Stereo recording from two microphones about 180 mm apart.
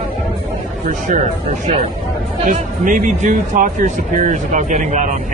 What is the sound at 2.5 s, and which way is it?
Speech, 45° right (ahead or behind).